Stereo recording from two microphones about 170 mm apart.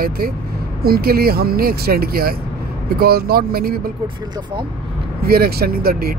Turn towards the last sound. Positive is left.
turn(degrees=-60)  # may be behind; listen again after turning